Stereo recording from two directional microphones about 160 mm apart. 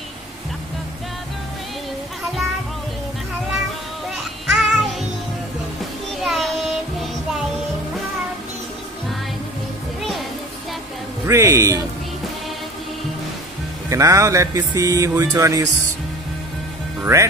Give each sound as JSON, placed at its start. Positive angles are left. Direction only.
{"t": 4.1, "sound": "music", "side_deg": 0}
{"t": 6.2, "sound": "child singing", "side_deg": 0}
{"t": 11.2, "sound": "speech", "side_deg": -20}
{"t": 13.8, "sound": "speech", "side_deg": -20}
{"t": 17.0, "sound": "speech", "side_deg": -20}